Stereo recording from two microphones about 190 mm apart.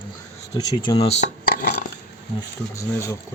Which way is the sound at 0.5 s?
20° left (ahead or behind).